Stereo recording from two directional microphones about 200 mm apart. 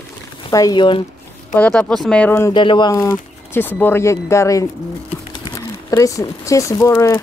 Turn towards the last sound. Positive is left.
turn(degrees=15)  # may be behind; listen again after turning